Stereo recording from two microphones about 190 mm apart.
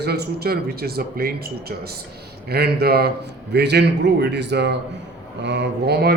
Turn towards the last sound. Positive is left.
turn(degrees=-60)  # may be behind; listen again after turning